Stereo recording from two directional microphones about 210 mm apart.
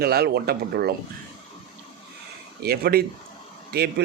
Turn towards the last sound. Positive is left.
turn(degrees=-50)  # may be behind; listen again after turning